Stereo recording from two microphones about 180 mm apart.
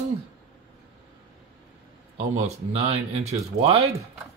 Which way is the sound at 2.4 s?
35° right (ahead or behind).